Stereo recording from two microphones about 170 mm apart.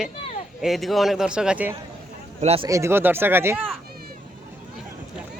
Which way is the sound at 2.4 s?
35° right (ahead or behind).